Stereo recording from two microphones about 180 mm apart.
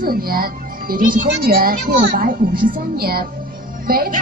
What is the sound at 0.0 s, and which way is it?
A child's voice, 55° right (ahead or behind).